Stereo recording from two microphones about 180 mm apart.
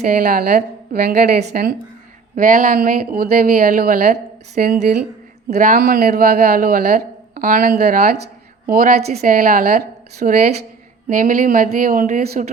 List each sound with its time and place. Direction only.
0.0 s a woman's voice: 55° right (ahead or behind)